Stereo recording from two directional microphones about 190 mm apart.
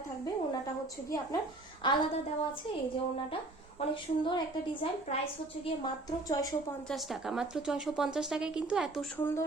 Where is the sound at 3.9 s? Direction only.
25° left (ahead or behind).